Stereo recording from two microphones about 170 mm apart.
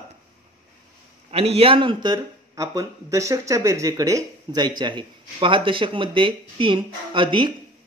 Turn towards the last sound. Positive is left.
turn(degrees=-30)  # may be behind; listen again after turning